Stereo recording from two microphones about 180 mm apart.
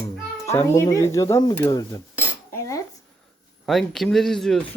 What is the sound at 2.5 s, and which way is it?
Cutlery, 15° left (ahead or behind).